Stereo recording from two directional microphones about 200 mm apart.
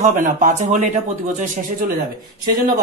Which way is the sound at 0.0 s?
40° right (ahead or behind).